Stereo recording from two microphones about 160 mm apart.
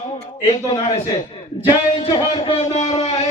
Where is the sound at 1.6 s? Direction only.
30° left (ahead or behind).